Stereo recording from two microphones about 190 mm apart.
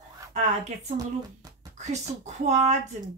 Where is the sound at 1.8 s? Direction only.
35° right (ahead or behind).